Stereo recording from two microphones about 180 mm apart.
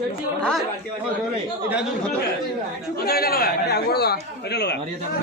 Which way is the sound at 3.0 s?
60° left (ahead or behind).